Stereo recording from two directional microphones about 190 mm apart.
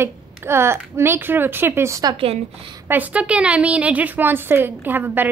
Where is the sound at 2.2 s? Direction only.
30° right (ahead or behind).